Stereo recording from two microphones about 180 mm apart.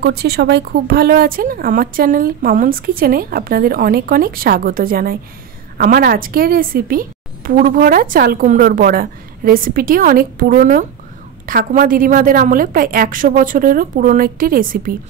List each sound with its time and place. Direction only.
0.0 s a woman's voice: 65° right (ahead or behind)